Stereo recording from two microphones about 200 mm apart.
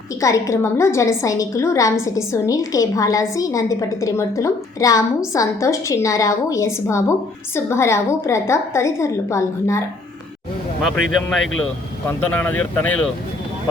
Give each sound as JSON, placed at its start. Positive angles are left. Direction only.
{"t": 0.2, "sound": "a woman's voice", "side_deg": 15}
{"t": 10.8, "sound": "a woman's voice", "side_deg": 0}